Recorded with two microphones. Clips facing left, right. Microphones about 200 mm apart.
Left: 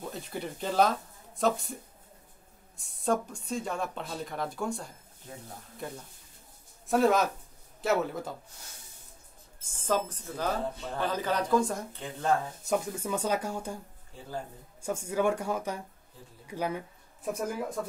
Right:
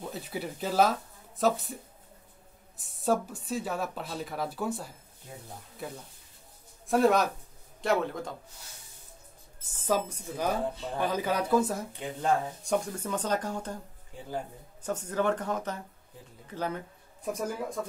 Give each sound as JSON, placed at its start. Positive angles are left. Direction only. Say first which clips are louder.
{"t": 0.0, "sound": "speech", "louder": "right 1 dB", "side_deg": -5}
{"t": 2.8, "sound": "speech", "louder": "right 1 dB", "side_deg": -5}
{"t": 9.6, "sound": "speech", "louder": "right 1 dB", "side_deg": -10}
{"t": 11.9, "sound": "speech", "louder": "right 2 dB", "side_deg": -15}
{"t": 12.6, "sound": "speech", "louder": "left 1 dB", "side_deg": 5}
{"t": 14.8, "sound": "speech", "louder": "left 1 dB", "side_deg": 10}